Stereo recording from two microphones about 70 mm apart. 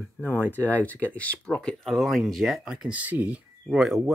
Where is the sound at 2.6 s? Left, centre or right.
Centre.